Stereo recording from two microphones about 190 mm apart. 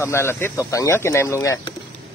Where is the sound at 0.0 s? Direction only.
15° left (ahead or behind).